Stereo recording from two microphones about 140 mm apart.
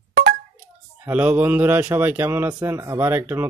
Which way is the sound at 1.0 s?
10° right (ahead or behind).